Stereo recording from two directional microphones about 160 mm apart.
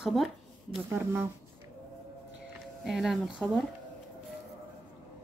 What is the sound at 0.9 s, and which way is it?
Speech, 15° right (ahead or behind).